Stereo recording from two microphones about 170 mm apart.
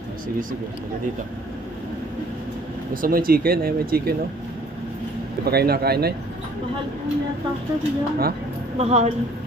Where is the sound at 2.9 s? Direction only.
55° right (ahead or behind).